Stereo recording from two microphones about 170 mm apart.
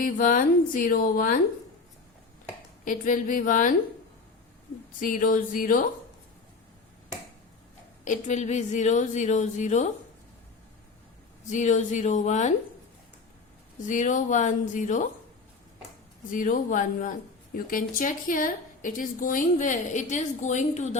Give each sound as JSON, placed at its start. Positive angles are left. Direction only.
{"t": 0.0, "sound": "speech", "side_deg": 55}
{"t": 2.8, "sound": "a woman's voice", "side_deg": 50}
{"t": 4.9, "sound": "a woman's voice", "side_deg": 55}
{"t": 8.0, "sound": "a woman's voice", "side_deg": 45}
{"t": 11.4, "sound": "a woman's voice", "side_deg": 45}
{"t": 13.7, "sound": "a woman's voice", "side_deg": 50}
{"t": 16.3, "sound": "a woman's voice", "side_deg": 50}